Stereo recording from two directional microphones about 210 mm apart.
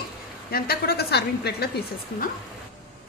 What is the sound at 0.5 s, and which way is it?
A woman's voice, 45° left (ahead or behind).